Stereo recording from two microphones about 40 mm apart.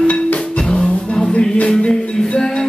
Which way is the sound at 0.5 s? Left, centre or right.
Left.